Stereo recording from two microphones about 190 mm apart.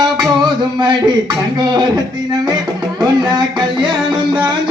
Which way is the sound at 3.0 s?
25° right (ahead or behind).